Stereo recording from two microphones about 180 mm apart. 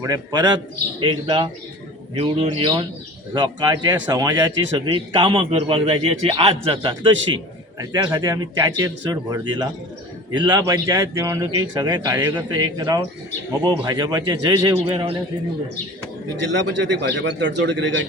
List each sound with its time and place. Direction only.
0.0 s a man's voice: 20° right (ahead or behind)
16.4 s a man's voice: 80° right